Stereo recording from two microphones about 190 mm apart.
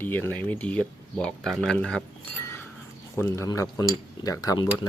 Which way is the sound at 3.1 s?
15° left (ahead or behind).